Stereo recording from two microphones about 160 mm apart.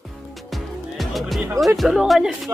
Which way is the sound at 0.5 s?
Centre (ahead or behind).